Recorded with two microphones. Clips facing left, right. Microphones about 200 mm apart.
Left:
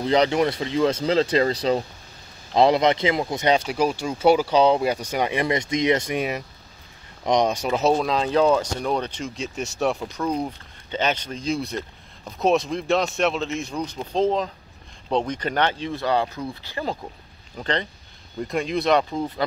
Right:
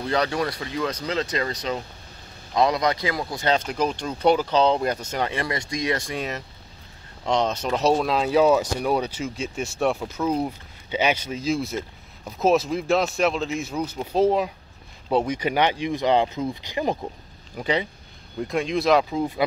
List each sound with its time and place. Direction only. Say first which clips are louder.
0.0 s speech: left 5 dB; 20° left (ahead or behind); by 19.4 s 5° right (ahead or behind)